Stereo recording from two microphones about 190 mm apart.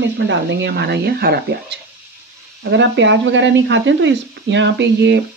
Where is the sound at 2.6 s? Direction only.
70° right (ahead or behind).